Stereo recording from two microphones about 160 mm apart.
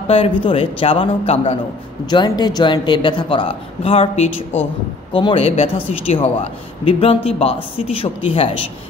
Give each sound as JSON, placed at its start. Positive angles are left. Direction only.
{"t": 0.1, "sound": "a man's voice", "side_deg": 35}
{"t": 2.0, "sound": "a man's voice", "side_deg": 25}